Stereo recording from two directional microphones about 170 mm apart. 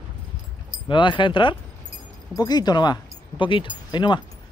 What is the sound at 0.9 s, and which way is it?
Speech, 30° left (ahead or behind).